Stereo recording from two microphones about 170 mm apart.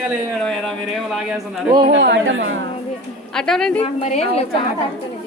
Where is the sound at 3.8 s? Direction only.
40° left (ahead or behind).